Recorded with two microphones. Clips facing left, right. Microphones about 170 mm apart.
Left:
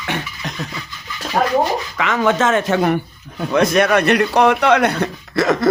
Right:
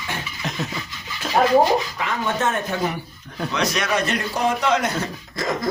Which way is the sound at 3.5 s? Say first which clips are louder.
Left 9 dB; 55° left (ahead or behind).